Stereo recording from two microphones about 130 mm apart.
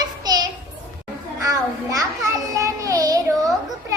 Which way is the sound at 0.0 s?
30° right (ahead or behind).